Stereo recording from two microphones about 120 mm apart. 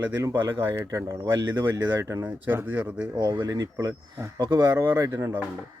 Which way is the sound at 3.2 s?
35° right (ahead or behind).